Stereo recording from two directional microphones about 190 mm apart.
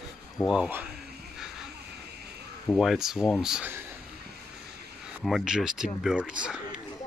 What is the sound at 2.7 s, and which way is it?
Speech, centre (ahead or behind).